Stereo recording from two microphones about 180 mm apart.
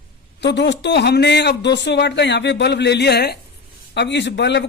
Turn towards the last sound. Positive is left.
turn(degrees=75)  # may be behind; listen again after turning